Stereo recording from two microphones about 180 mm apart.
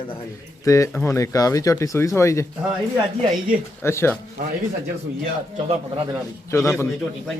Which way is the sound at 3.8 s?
15° left (ahead or behind).